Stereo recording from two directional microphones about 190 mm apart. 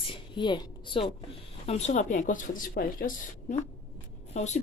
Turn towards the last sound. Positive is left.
turn(degrees=35)  # may be behind; listen again after turning